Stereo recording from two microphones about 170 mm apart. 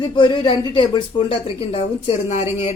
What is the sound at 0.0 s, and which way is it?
A woman's voice, 25° left (ahead or behind).